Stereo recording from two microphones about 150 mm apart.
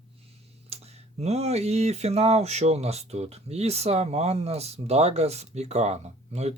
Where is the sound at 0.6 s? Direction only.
45° right (ahead or behind).